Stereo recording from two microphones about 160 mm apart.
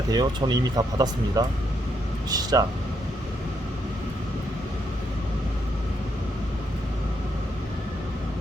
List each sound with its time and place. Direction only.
0.1 s speech: 25° right (ahead or behind)